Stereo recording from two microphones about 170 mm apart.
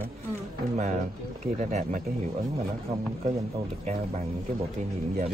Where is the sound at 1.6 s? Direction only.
50° right (ahead or behind).